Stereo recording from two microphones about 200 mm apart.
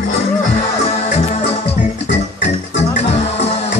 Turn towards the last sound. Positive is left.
turn(degrees=30)  # may be behind; listen again after turning